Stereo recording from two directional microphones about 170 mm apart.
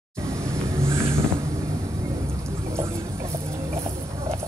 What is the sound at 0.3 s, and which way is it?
Vehicle, 15° right (ahead or behind).